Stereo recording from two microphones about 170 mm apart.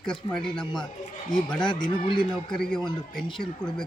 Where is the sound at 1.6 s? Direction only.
25° left (ahead or behind).